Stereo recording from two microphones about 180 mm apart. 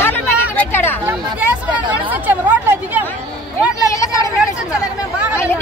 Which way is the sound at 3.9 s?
20° left (ahead or behind).